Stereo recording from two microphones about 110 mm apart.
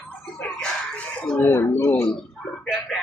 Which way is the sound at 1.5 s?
25° left (ahead or behind).